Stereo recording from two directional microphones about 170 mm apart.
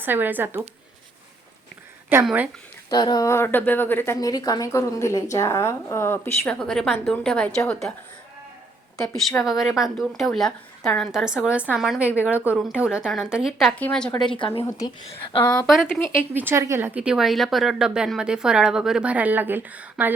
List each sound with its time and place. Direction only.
0.0 s speech: 10° right (ahead or behind)
2.2 s speech: 10° right (ahead or behind)
2.9 s a woman's voice: 25° left (ahead or behind)
6.6 s speech: centre (ahead or behind)
9.4 s speech: centre (ahead or behind)
14.3 s a woman's voice: 30° left (ahead or behind)
14.6 s a woman's voice: 15° left (ahead or behind)
14.8 s a woman's voice: 30° left (ahead or behind)
15.6 s speech: centre (ahead or behind)
16.3 s speech: 10° right (ahead or behind)